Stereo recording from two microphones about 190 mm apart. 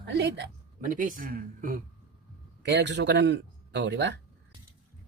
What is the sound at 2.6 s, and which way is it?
Speech, 65° right (ahead or behind).